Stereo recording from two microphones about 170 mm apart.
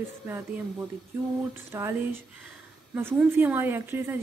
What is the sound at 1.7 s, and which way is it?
A woman's voice, 15° right (ahead or behind).